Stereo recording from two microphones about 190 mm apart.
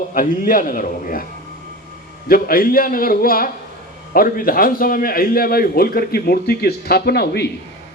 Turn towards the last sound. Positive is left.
turn(degrees=60)  # may be behind; listen again after turning